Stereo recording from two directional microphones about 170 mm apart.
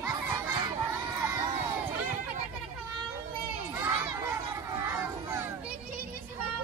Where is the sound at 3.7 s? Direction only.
15° right (ahead or behind).